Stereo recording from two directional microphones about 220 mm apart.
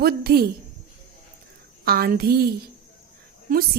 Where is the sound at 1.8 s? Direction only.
45° right (ahead or behind).